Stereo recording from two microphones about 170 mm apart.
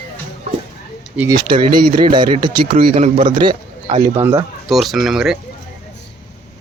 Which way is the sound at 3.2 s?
25° right (ahead or behind).